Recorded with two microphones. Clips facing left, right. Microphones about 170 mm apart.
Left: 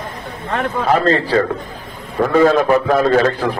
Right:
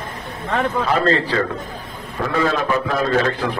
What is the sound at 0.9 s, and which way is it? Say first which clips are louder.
A man's voice: left 5 dB; 40° left (ahead or behind).